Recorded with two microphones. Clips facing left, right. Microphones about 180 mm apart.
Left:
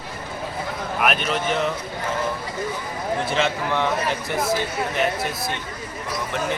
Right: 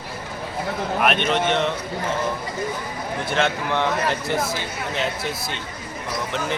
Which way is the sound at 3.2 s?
Centre (ahead or behind).